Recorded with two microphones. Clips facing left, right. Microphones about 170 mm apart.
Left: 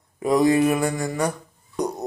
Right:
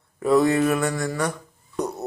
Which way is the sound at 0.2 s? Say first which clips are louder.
Right 1 dB; 15° left (ahead or behind).